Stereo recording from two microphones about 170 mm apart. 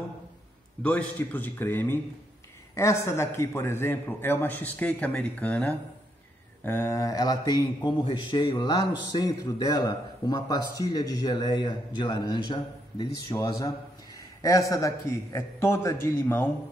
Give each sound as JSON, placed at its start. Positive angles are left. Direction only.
{"t": 0.8, "sound": "a man's voice", "side_deg": 10}